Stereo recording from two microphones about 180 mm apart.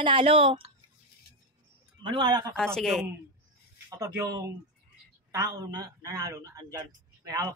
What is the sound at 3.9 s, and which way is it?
A woman's voice, 15° right (ahead or behind).